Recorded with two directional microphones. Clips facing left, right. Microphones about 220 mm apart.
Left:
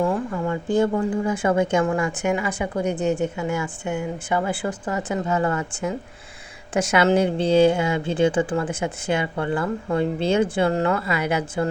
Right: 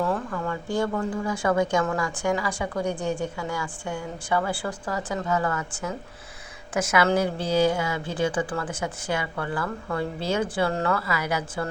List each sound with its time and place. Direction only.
0.3 s a woman's voice: 20° left (ahead or behind)